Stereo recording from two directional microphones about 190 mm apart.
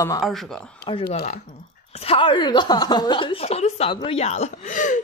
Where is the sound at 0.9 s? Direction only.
25° left (ahead or behind).